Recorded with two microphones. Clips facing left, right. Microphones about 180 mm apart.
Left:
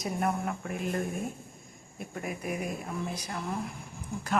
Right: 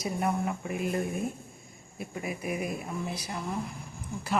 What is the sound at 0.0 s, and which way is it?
Speech, centre (ahead or behind).